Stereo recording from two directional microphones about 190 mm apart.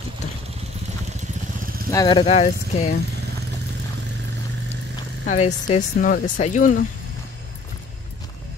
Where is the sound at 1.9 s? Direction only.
25° left (ahead or behind).